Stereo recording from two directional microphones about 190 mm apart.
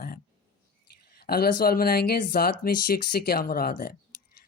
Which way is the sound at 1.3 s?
50° left (ahead or behind).